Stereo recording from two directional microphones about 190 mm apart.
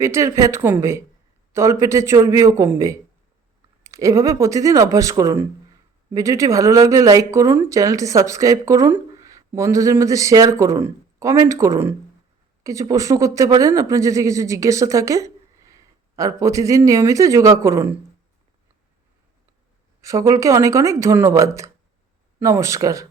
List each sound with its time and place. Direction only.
0.0 s speech: 15° right (ahead or behind)
20.0 s speech: 15° right (ahead or behind)